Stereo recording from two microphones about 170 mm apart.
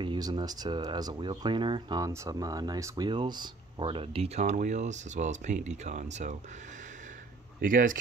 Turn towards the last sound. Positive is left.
turn(degrees=-50)  # may be behind; listen again after turning